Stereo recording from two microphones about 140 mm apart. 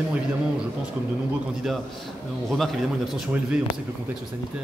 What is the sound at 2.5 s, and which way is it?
Speech, centre (ahead or behind).